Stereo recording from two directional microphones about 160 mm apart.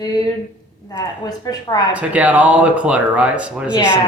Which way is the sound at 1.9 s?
10° right (ahead or behind).